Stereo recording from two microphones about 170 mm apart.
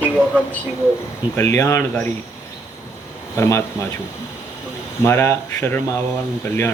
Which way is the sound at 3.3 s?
15° left (ahead or behind).